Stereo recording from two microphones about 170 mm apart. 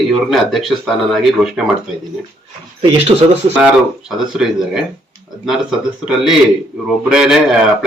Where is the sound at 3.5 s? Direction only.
5° right (ahead or behind).